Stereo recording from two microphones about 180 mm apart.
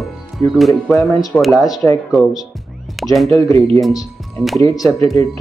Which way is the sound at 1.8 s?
15° left (ahead or behind).